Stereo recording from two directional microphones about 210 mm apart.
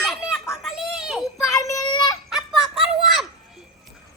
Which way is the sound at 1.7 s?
20° left (ahead or behind).